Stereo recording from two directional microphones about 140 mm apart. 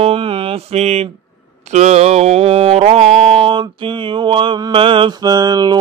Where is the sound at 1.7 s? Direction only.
55° right (ahead or behind).